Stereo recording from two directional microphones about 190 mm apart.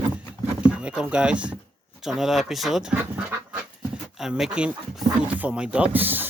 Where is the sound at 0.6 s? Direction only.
5° right (ahead or behind).